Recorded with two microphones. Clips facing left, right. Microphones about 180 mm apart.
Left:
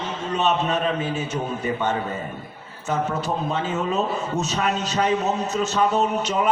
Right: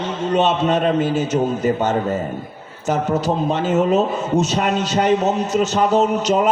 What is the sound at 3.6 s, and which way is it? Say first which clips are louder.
A man's voice: right 7 dB; 80° right.